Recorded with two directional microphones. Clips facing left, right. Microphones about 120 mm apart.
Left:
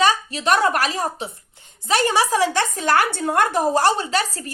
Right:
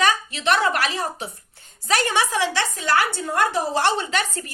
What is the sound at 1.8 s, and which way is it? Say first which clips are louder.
A woman's voice: left 3 dB; 30° left (ahead or behind).